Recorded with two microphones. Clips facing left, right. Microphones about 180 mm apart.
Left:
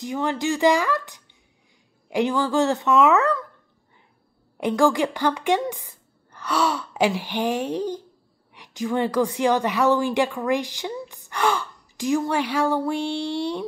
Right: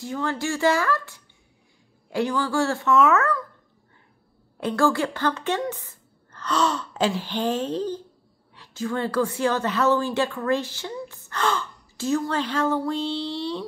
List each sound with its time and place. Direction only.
0.0 s a woman's voice: 15° left (ahead or behind)
4.6 s a woman's voice: 15° left (ahead or behind)